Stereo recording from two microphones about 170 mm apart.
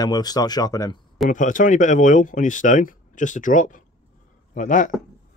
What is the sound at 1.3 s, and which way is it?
Speech, 50° left (ahead or behind).